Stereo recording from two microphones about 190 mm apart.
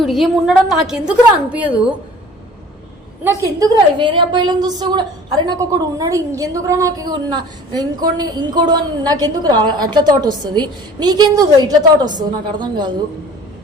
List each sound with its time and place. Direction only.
0.0 s a woman's voice: centre (ahead or behind)
3.9 s a woman's voice: 25° right (ahead or behind)